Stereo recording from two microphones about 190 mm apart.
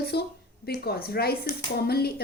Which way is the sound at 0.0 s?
55° left (ahead or behind).